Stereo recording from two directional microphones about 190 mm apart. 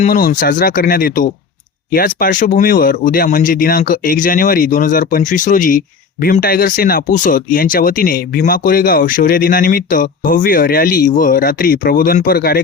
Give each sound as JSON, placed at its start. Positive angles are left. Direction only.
{"t": 0.0, "sound": "speech", "side_deg": 45}